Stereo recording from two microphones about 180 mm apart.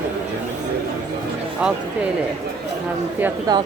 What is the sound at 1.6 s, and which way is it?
Speech, 5° right (ahead or behind).